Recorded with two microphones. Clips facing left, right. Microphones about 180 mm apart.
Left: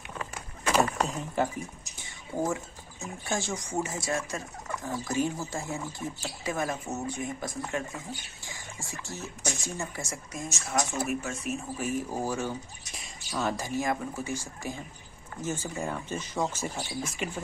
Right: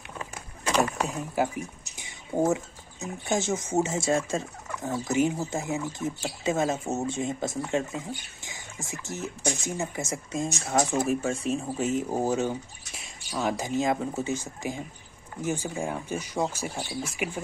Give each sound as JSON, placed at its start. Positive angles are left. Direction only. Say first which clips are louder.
{"t": 0.9, "sound": "speech", "louder": "right 1 dB", "side_deg": -10}
{"t": 2.0, "sound": "speech", "louder": "right 5 dB", "side_deg": -20}